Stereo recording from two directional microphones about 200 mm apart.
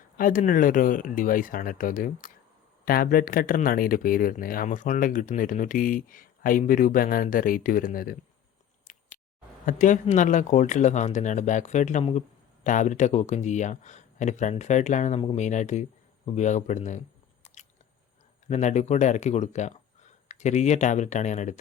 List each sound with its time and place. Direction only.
0.2 s speech: 45° left (ahead or behind)
8.9 s a sound: 40° left (ahead or behind)
9.6 s speech: 40° left (ahead or behind)
17.4 s biting: 35° left (ahead or behind)
18.4 s speech: 35° left (ahead or behind)